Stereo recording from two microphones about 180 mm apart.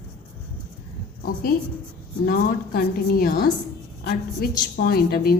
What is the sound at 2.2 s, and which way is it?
A woman's voice, 55° left (ahead or behind).